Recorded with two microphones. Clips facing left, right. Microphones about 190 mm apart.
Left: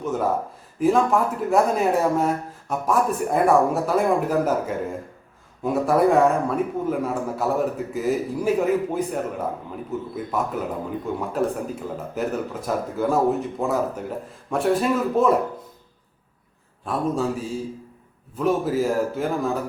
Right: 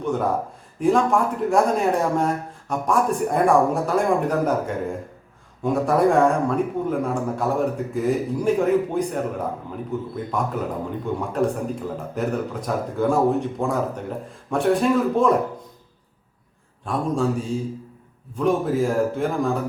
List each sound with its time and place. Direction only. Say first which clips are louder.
0.0 s a man's voice: right 1 dB; 5° left (ahead or behind)
16.8 s speech: right 1 dB; centre (ahead or behind)